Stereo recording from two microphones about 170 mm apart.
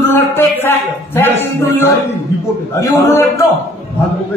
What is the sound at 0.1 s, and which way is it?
A man's voice, 15° left (ahead or behind).